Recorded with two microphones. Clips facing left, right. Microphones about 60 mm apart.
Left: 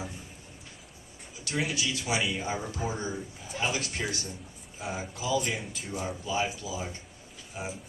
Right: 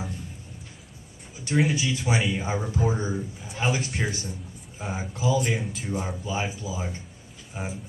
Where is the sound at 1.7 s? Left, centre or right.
Right.